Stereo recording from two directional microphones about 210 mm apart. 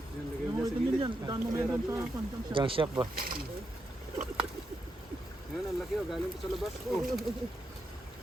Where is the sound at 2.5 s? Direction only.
25° right (ahead or behind).